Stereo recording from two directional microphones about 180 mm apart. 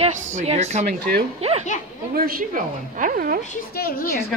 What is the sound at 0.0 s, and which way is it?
A woman's voice, 40° right (ahead or behind).